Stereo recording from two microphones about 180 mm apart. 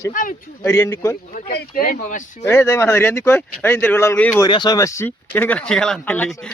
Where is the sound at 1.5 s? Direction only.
55° left (ahead or behind).